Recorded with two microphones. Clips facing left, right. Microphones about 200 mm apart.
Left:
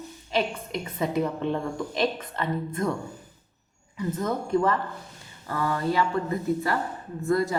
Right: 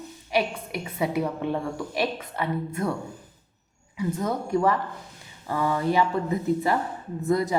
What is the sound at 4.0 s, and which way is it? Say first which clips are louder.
A woman's voice: right 1 dB; 10° right (ahead or behind).